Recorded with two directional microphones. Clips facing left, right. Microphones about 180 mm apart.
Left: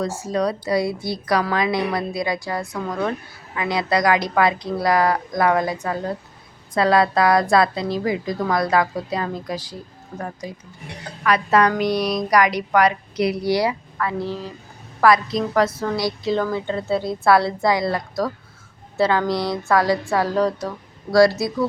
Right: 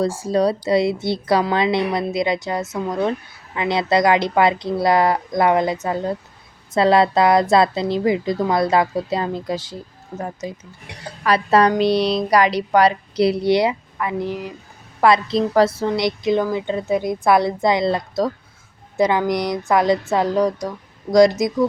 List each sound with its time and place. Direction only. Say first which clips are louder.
0.0 s a woman's voice: right 4 dB; 30° right (ahead or behind)
11.2 s a woman's voice: right 2 dB; 30° right (ahead or behind)
15.0 s a woman's voice: right 1 dB; 25° right (ahead or behind)